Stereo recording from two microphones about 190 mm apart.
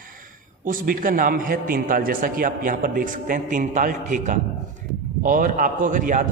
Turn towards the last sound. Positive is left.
turn(degrees=-45)  # may be behind; listen again after turning